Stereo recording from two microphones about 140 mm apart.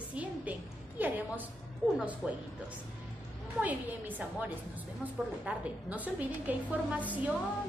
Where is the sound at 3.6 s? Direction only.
10° right (ahead or behind).